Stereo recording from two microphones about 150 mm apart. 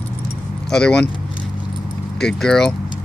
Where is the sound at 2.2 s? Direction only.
5° left (ahead or behind).